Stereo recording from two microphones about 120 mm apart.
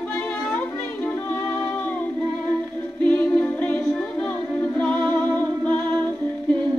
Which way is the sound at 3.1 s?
15° left (ahead or behind).